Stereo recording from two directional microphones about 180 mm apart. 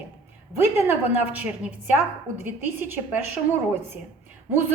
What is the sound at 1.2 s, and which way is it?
A woman's voice, 10° right (ahead or behind).